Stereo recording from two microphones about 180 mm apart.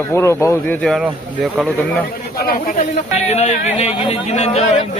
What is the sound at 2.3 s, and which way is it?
Speech, 60° left (ahead or behind).